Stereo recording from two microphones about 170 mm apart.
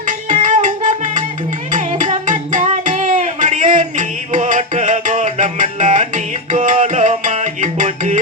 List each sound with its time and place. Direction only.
0.0 s music: 50° right (ahead or behind)